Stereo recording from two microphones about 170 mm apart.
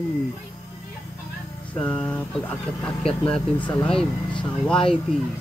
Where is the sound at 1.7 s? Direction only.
5° left (ahead or behind).